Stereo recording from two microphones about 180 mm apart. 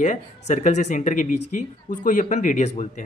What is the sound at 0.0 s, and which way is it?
Speech, 40° left (ahead or behind).